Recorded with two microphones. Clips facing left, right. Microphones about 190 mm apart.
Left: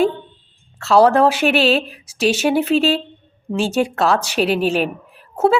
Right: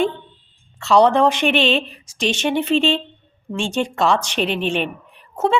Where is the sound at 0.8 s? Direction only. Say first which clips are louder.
Left 2 dB; 5° left (ahead or behind).